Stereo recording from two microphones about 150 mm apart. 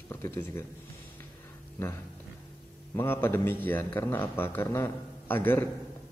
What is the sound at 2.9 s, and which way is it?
A man's voice, 15° left (ahead or behind).